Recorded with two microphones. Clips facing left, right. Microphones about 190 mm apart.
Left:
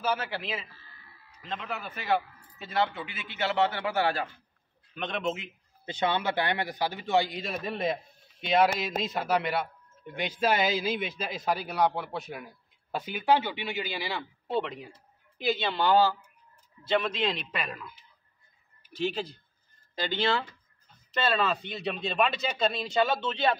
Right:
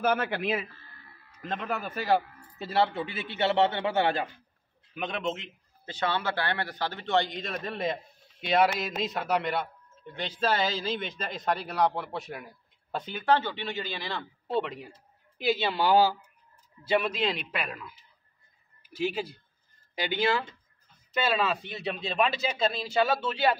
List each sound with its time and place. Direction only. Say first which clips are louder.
0.0 s a man's voice: right 4 dB; 55° right (ahead or behind); by 4.3 s 20° right (ahead or behind)
4.9 s a man's voice: even; 5° right (ahead or behind)
5.9 s a man's voice: left 2 dB; 20° left (ahead or behind); by 17.9 s 5° right (ahead or behind)
18.9 s a man's voice: right 1 dB; 10° right (ahead or behind)